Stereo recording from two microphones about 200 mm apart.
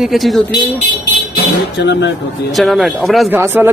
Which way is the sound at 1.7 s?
60° left (ahead or behind).